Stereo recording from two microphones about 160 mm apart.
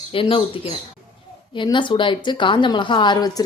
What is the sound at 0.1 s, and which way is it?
A woman's voice, 35° left (ahead or behind).